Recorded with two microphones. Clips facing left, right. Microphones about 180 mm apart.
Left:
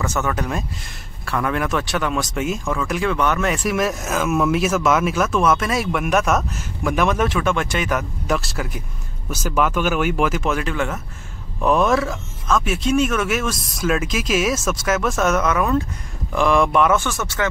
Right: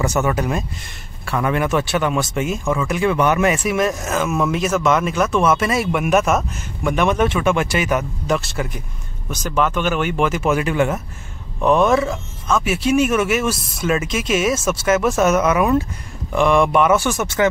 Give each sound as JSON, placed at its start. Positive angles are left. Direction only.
{"t": 0.0, "sound": "speech", "side_deg": -15}
{"t": 11.6, "sound": "speech", "side_deg": 0}
{"t": 17.1, "sound": "speech", "side_deg": -15}